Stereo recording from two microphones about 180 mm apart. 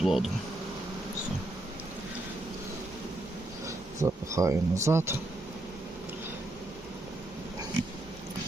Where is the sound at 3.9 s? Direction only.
15° right (ahead or behind).